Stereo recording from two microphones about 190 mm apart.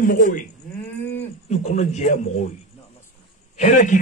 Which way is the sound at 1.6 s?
35° left (ahead or behind).